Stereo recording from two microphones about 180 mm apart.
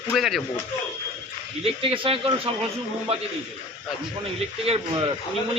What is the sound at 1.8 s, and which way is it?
Speech, 30° right (ahead or behind).